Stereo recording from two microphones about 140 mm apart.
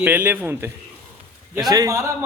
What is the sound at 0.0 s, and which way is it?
A man's voice, 10° right (ahead or behind).